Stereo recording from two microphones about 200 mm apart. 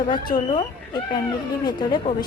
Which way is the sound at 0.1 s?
20° left (ahead or behind).